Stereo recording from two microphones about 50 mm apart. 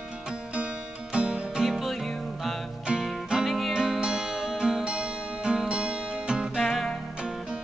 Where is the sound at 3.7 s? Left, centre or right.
Centre.